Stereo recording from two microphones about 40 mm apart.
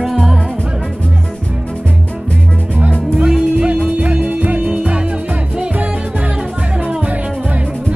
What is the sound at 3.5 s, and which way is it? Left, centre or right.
Music, right.